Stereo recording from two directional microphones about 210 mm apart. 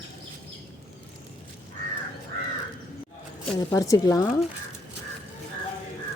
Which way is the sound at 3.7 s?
15° left (ahead or behind).